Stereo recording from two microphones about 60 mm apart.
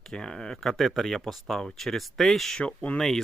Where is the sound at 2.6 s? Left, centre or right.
Left.